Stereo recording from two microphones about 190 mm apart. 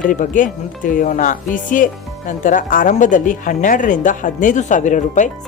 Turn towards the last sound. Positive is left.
turn(degrees=40)  # may be behind; listen again after turning